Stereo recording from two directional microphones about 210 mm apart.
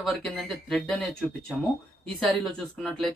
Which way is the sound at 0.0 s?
Centre (ahead or behind).